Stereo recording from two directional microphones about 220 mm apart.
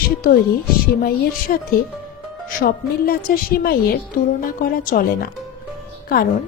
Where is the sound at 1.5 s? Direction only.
35° left (ahead or behind).